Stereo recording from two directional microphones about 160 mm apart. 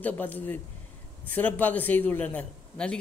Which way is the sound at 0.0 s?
10° left (ahead or behind).